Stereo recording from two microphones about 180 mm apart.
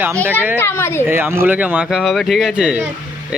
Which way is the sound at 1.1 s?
15° right (ahead or behind).